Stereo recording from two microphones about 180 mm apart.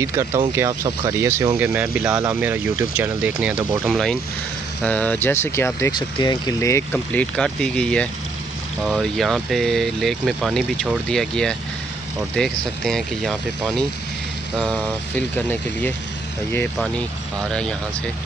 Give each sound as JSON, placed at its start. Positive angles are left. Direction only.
{"t": 0.0, "sound": "speech", "side_deg": -20}
{"t": 1.6, "sound": "speech", "side_deg": -5}
{"t": 15.1, "sound": "speech", "side_deg": 10}
{"t": 17.4, "sound": "speech", "side_deg": 5}